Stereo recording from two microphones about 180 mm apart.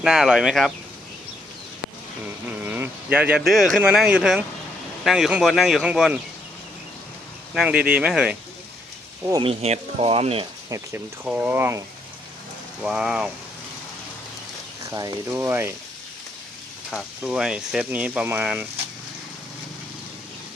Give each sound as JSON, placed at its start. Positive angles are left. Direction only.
{"t": 0.0, "sound": "speech", "side_deg": -5}
{"t": 2.2, "sound": "speech", "side_deg": -10}
{"t": 7.5, "sound": "speech", "side_deg": -5}
{"t": 9.3, "sound": "speech", "side_deg": -30}
{"t": 10.7, "sound": "speech", "side_deg": -10}
{"t": 12.8, "sound": "speech", "side_deg": -5}
{"t": 14.8, "sound": "speech", "side_deg": -20}
{"t": 16.9, "sound": "speech", "side_deg": -5}